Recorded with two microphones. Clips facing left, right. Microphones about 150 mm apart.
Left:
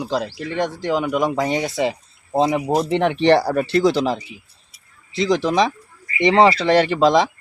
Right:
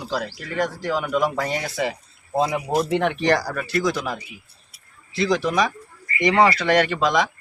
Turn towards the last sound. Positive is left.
turn(degrees=30)  # may be behind; listen again after turning